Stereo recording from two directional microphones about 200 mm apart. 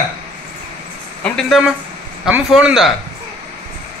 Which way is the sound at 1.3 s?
Centre (ahead or behind).